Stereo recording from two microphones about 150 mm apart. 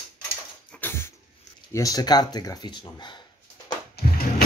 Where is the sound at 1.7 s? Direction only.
25° left (ahead or behind).